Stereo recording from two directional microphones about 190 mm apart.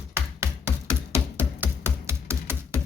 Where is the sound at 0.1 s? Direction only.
15° right (ahead or behind).